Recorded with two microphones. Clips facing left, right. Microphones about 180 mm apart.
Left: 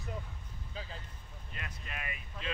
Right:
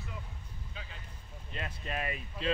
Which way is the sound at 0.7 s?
35° left (ahead or behind).